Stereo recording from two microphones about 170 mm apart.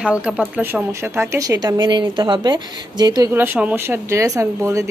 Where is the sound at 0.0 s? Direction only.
5° right (ahead or behind); by 3.3 s 25° right (ahead or behind).